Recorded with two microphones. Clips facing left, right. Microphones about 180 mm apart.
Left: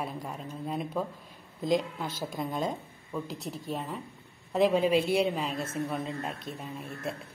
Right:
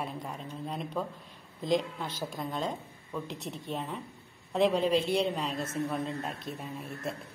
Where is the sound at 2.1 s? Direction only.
45° left (ahead or behind).